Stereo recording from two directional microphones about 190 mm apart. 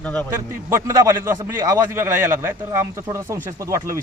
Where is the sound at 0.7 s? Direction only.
15° right (ahead or behind).